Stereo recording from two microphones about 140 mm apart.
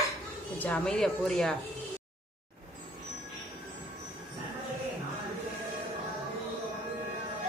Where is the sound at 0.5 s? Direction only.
10° left (ahead or behind).